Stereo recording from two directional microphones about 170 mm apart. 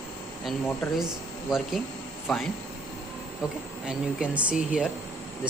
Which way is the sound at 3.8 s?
5° right (ahead or behind).